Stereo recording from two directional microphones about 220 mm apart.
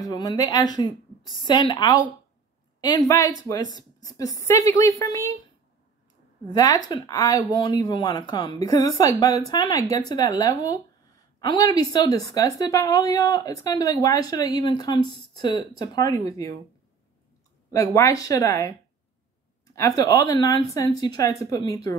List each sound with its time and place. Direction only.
0.0 s a woman's voice: 15° left (ahead or behind)
3.1 s speech: 15° left (ahead or behind)
6.5 s speech: 15° left (ahead or behind)
17.6 s speech: 15° left (ahead or behind)
19.7 s speech: 15° left (ahead or behind)